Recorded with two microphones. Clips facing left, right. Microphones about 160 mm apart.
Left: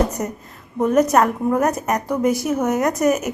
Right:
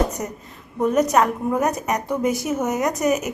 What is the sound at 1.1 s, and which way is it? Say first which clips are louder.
A woman's voice: left 2 dB; centre (ahead or behind).